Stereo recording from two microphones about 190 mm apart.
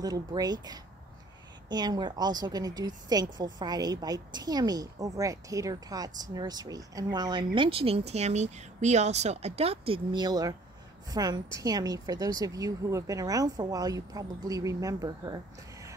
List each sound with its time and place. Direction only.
0.0 s a woman's voice: 20° right (ahead or behind)